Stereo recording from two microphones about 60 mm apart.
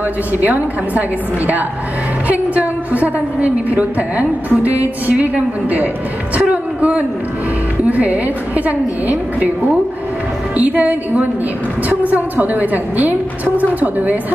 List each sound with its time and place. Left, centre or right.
0.3 s a woman's voice: right
2.2 s a woman's voice: right
6.3 s a sound: right
7.8 s a woman's voice: right
10.6 s a woman's voice: right